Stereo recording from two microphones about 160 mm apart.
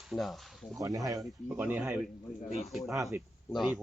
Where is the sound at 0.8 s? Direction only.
20° right (ahead or behind).